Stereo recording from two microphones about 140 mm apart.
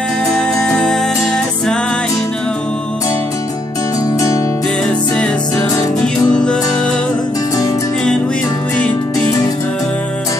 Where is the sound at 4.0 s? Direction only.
25° left (ahead or behind).